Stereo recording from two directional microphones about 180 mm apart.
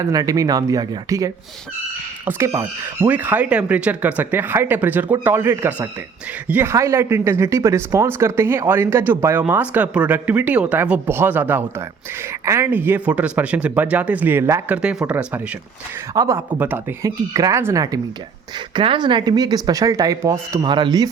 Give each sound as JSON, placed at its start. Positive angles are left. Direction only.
{"t": 0.0, "sound": "speech", "side_deg": -20}
{"t": 18.7, "sound": "speech", "side_deg": -30}